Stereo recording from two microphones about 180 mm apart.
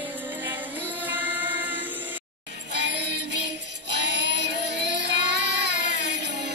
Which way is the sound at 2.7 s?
70° right (ahead or behind).